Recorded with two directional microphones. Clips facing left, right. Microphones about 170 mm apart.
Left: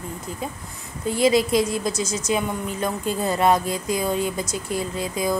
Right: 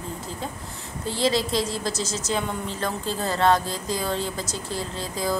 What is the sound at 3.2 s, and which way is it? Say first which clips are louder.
Speech: left 1 dB; 20° left (ahead or behind).